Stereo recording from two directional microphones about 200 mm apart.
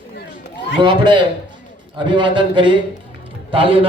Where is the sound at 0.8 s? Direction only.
25° right (ahead or behind).